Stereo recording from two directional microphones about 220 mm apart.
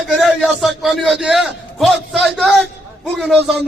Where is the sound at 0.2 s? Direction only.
Centre (ahead or behind).